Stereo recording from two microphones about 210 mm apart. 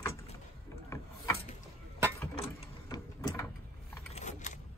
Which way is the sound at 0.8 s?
15° left (ahead or behind).